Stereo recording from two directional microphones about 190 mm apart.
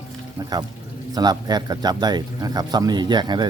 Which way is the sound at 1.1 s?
20° right (ahead or behind).